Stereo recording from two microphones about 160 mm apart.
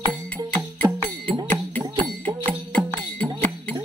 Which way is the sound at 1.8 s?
30° right (ahead or behind).